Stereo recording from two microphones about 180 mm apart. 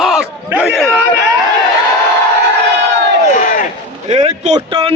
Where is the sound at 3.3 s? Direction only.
45° left (ahead or behind).